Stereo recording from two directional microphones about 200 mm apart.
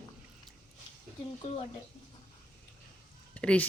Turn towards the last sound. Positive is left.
turn(degrees=5)  # may be behind; listen again after turning